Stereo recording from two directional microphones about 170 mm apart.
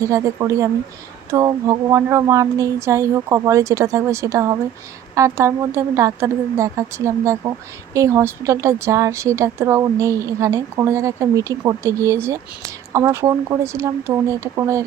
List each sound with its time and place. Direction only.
0.0 s speech: 20° right (ahead or behind)